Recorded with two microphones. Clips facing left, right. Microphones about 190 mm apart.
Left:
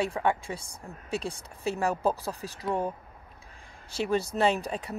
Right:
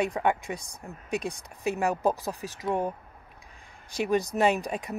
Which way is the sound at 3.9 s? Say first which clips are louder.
Right 2 dB; 15° right (ahead or behind).